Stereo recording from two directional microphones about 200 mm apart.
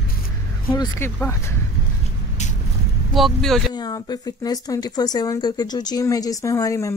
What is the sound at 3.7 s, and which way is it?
Speech, 20° left (ahead or behind).